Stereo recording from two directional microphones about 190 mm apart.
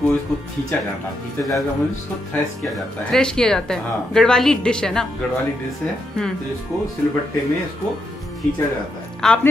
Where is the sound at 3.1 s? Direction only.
5° left (ahead or behind).